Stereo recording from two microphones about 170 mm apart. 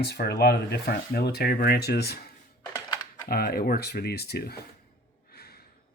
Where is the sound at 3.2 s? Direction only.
65° left (ahead or behind).